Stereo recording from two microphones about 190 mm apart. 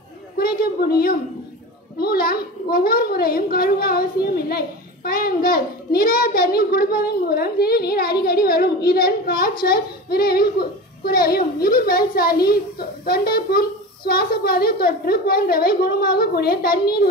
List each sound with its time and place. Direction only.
0.4 s a woman's voice: 55° left (ahead or behind)